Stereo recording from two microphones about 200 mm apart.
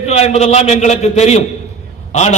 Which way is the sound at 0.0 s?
35° left (ahead or behind).